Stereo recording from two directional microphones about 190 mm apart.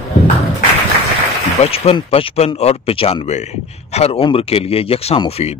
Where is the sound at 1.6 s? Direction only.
30° left (ahead or behind).